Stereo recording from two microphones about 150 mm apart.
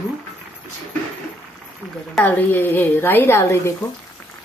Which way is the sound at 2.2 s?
10° left (ahead or behind).